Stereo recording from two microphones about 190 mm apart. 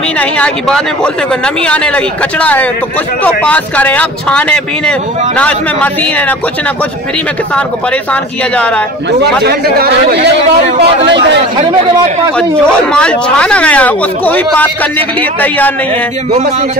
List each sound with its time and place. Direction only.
0.2 s speech: 5° left (ahead or behind)
8.1 s speech: 5° left (ahead or behind)
9.2 s a man's voice: 55° right (ahead or behind)
12.9 s speech: 5° left (ahead or behind)